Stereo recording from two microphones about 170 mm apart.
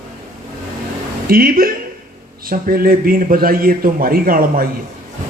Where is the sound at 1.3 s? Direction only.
60° right (ahead or behind).